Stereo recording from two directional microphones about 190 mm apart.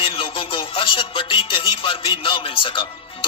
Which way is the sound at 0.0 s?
30° left (ahead or behind).